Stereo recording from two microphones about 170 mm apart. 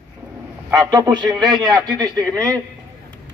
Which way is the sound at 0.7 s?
20° right (ahead or behind).